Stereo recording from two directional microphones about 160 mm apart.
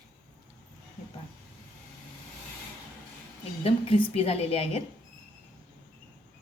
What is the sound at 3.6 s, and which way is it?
A woman's voice, 35° left (ahead or behind).